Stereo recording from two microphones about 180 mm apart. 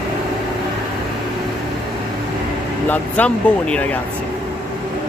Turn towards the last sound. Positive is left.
turn(degrees=5)  # may be behind; listen again after turning